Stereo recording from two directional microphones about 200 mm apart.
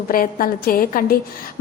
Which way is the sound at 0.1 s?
45° left (ahead or behind).